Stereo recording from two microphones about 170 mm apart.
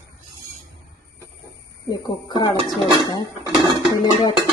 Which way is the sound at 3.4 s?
25° right (ahead or behind).